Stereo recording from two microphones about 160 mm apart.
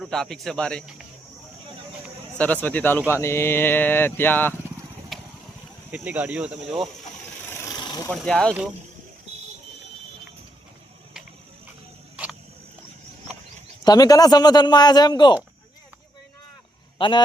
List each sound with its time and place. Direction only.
0.0 s speech: centre (ahead or behind)
2.4 s speech: 10° left (ahead or behind)
5.1 s vehicle: centre (ahead or behind)
5.9 s speech: 10° right (ahead or behind)
7.6 s rub: 25° left (ahead or behind)
8.1 s speech: 5° left (ahead or behind)
12.1 s a sound: 10° right (ahead or behind)
13.8 s a man's voice: 25° left (ahead or behind)
17.0 s a man's voice: 30° left (ahead or behind)